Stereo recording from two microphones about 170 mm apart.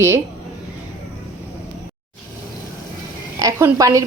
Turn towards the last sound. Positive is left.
turn(degrees=-20)  # may be behind; listen again after turning